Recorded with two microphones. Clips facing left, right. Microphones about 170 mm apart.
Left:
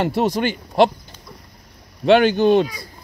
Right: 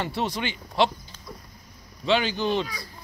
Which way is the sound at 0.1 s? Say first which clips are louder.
Left 9 dB; 45° left (ahead or behind).